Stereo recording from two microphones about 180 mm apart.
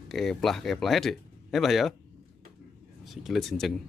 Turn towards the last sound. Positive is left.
turn(degrees=0)  # may be behind; listen again after turning